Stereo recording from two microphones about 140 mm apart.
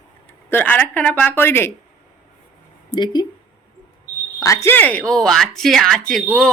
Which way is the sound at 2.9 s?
30° left (ahead or behind).